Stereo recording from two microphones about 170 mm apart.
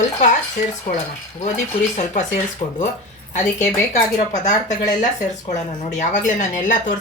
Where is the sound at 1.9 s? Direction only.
45° left (ahead or behind).